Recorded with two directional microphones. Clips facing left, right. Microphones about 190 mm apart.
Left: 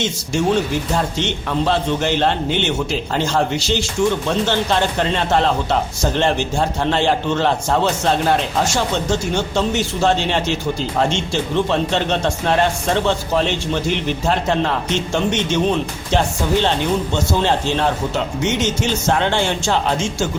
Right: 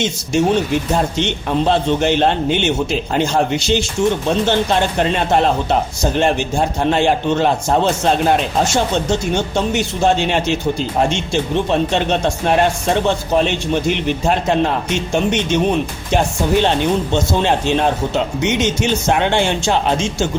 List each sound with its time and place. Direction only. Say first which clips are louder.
0.0 s a man's voice: right 3 dB; 20° right (ahead or behind)